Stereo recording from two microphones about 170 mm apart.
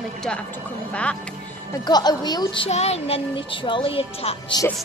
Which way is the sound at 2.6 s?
40° left (ahead or behind).